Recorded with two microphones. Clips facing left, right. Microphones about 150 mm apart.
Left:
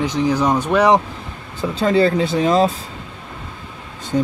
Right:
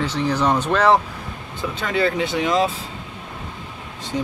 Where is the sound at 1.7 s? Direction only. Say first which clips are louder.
Left 6 dB; 35° left (ahead or behind).